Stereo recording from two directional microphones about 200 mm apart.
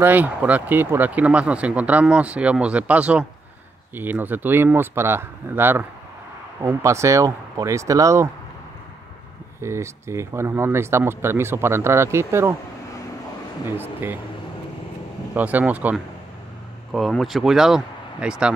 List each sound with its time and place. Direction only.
0.0 s speech: 10° right (ahead or behind)
9.6 s speech: 15° right (ahead or behind)
13.7 s speech: 10° right (ahead or behind)
15.3 s speech: 10° right (ahead or behind)